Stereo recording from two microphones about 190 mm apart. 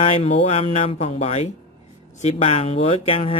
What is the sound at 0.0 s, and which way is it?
Speech, 30° left (ahead or behind).